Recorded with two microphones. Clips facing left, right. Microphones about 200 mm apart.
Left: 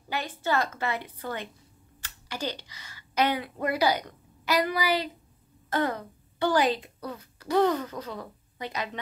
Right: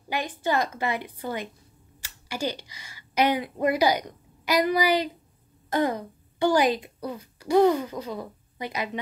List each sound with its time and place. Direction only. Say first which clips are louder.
0.1 s a woman's voice: right 2 dB; 15° right (ahead or behind)